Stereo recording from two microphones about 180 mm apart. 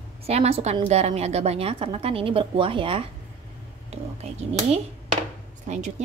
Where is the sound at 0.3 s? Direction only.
35° right (ahead or behind).